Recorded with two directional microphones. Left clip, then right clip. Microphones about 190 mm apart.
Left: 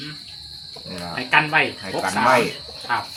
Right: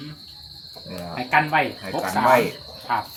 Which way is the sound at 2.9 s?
50° right (ahead or behind).